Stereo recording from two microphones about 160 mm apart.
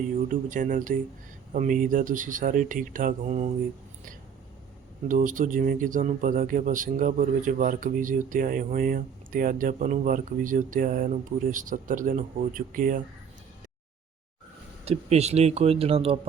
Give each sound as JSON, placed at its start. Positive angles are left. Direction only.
{"t": 0.3, "sound": "speech", "side_deg": -55}
{"t": 5.0, "sound": "speech", "side_deg": -55}
{"t": 14.8, "sound": "speech", "side_deg": -45}